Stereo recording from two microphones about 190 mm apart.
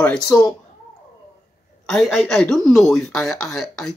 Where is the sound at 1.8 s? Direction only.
Centre (ahead or behind).